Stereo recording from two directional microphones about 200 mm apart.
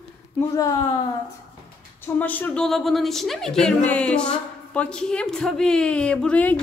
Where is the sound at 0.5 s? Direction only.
15° left (ahead or behind).